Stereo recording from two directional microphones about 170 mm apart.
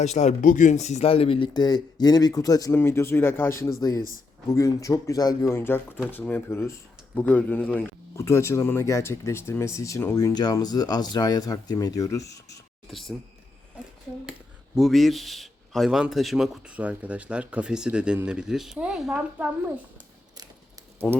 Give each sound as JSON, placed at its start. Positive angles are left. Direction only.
{"t": 0.0, "sound": "speech", "side_deg": 40}
{"t": 12.9, "sound": "a man's voice", "side_deg": 0}
{"t": 14.8, "sound": "a man's voice", "side_deg": 0}